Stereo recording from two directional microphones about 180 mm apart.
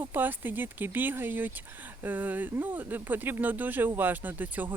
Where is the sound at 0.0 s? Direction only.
10° right (ahead or behind).